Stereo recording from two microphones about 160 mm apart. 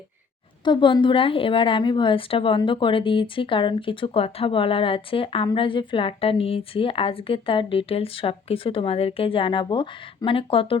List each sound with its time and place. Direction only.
0.6 s a woman's voice: 30° left (ahead or behind)